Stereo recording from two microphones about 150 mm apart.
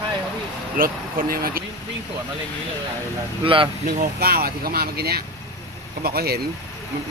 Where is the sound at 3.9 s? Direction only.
80° right.